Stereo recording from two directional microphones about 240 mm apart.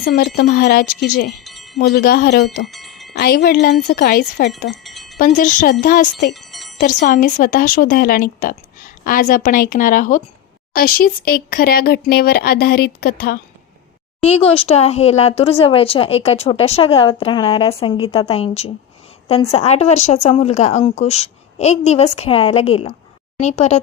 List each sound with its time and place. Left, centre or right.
0.0 s speech: left
1.5 s chime: centre
1.8 s speech: left
2.6 s a sound: centre
3.1 s speech: left
4.8 s wind chime: centre
5.1 s speech: left
6.3 s music: centre
6.7 s speech: left
14.2 s speech: left